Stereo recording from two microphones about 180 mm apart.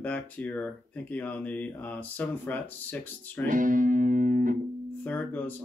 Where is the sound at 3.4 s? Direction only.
50° right (ahead or behind).